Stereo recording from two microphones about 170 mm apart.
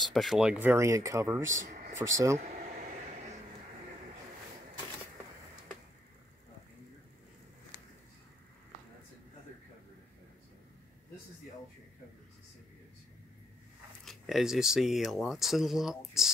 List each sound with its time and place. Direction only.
0.0 s speech: centre (ahead or behind); by 2.1 s 15° right (ahead or behind)
2.3 s vehicle: 40° right (ahead or behind)
14.0 s speech: centre (ahead or behind)